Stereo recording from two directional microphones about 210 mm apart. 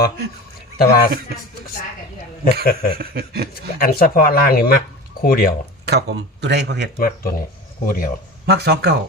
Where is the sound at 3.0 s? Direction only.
45° right (ahead or behind).